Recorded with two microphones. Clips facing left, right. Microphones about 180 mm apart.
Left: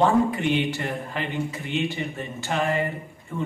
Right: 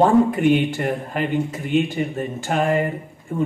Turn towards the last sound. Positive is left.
turn(degrees=-45)  # may be behind; listen again after turning